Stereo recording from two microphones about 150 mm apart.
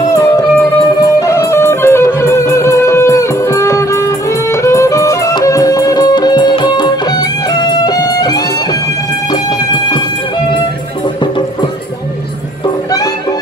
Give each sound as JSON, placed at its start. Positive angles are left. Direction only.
{"t": 1.2, "sound": "music", "side_deg": 20}